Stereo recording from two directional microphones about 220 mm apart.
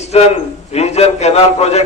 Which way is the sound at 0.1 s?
30° left (ahead or behind).